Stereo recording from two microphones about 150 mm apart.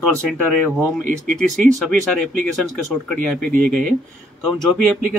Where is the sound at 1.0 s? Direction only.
60° right (ahead or behind).